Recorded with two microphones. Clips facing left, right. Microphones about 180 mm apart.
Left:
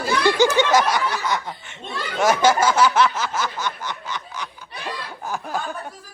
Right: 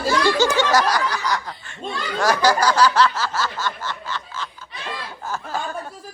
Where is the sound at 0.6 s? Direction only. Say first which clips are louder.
Left 1 dB; 20° left (ahead or behind).